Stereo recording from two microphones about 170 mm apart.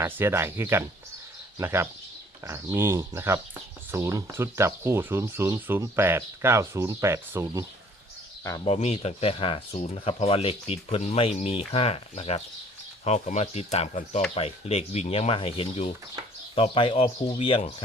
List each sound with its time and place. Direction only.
0.0 s speech: 15° right (ahead or behind)
8.6 s speech: 35° left (ahead or behind)